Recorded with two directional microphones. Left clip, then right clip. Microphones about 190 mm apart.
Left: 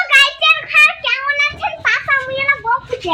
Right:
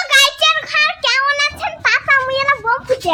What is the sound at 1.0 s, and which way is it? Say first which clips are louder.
Child singing: right 3 dB; 35° right (ahead or behind).